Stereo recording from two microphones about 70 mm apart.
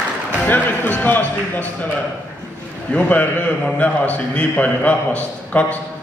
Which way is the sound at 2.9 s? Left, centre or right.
Left.